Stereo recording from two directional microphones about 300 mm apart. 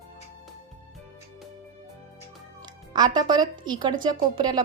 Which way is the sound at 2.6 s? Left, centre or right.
Centre.